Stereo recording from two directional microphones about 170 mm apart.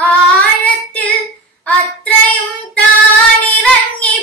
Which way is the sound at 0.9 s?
10° left (ahead or behind).